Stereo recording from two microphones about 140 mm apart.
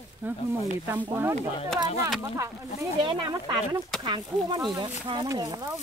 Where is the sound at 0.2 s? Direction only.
10° right (ahead or behind).